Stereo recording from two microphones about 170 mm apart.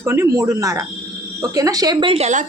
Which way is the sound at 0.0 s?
15° right (ahead or behind).